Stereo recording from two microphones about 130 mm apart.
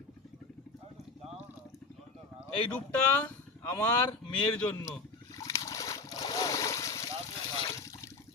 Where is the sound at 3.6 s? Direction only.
20° left (ahead or behind).